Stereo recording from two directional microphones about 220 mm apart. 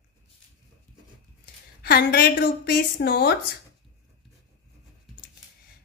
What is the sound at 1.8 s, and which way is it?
A woman's voice, 45° left (ahead or behind).